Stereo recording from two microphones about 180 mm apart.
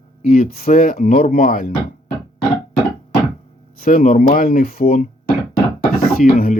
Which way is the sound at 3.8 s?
50° left (ahead or behind).